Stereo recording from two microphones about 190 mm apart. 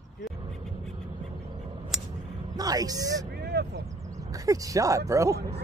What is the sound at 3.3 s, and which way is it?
Vehicle, 60° right (ahead or behind).